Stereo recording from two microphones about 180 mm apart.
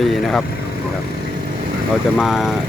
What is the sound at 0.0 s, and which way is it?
Speech, centre (ahead or behind).